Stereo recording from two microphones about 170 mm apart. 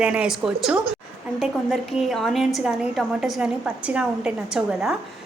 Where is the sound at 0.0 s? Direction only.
5° right (ahead or behind).